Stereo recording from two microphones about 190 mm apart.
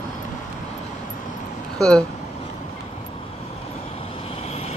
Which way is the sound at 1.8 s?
5° left (ahead or behind).